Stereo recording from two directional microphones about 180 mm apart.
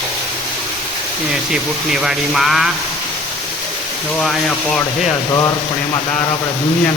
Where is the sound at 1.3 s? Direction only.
5° right (ahead or behind).